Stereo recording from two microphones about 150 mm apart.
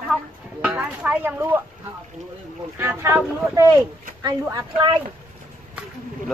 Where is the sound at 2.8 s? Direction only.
15° right (ahead or behind).